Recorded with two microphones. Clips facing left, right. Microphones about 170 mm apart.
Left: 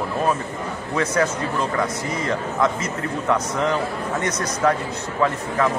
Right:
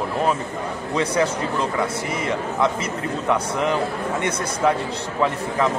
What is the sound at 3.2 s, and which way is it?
A man's voice, 15° right (ahead or behind).